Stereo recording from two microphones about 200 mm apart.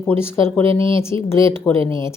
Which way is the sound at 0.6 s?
25° right (ahead or behind).